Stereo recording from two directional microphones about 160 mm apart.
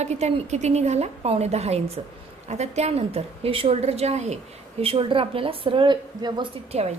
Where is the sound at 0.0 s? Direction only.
45° right (ahead or behind); by 6.5 s 30° right (ahead or behind).